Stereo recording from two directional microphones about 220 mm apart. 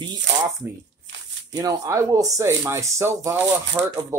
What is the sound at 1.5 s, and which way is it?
Speech, 15° right (ahead or behind).